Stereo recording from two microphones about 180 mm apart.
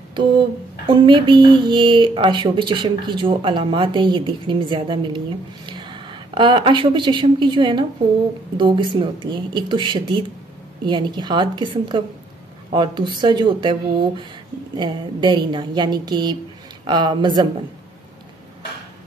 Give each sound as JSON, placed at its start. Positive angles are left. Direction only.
{"t": 0.8, "sound": "speech", "side_deg": -25}